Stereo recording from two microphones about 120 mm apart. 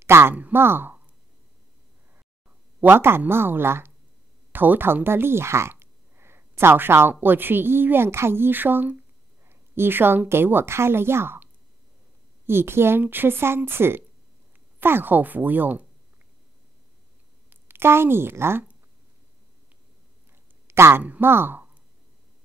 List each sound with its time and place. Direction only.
0.0 s speech: 20° right (ahead or behind)
2.8 s a woman's voice: 20° right (ahead or behind)
12.4 s speech: 20° right (ahead or behind)
17.5 s a woman's voice: 20° right (ahead or behind)
20.6 s speech: 20° right (ahead or behind)